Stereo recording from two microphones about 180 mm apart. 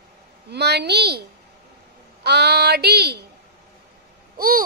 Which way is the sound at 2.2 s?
65° right (ahead or behind).